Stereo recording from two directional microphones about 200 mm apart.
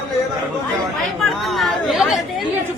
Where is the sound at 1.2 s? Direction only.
Centre (ahead or behind).